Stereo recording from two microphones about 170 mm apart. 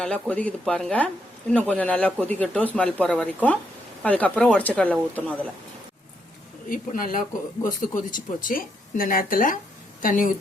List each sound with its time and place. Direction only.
0.0 s speech: 5° left (ahead or behind)
6.7 s speech: 55° left (ahead or behind)